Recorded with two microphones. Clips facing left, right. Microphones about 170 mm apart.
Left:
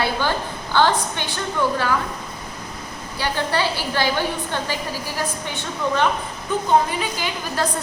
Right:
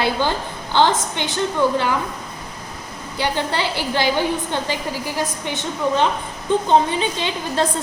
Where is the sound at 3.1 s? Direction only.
20° right (ahead or behind).